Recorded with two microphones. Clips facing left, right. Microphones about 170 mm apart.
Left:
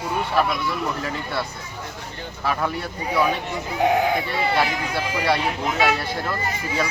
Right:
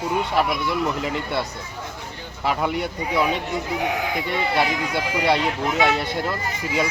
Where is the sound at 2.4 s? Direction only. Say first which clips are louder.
Right 2 dB; 20° right (ahead or behind).